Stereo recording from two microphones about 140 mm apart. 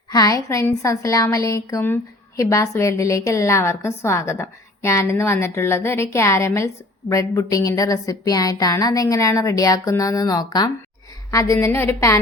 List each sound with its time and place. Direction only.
0.1 s a woman's voice: 25° left (ahead or behind)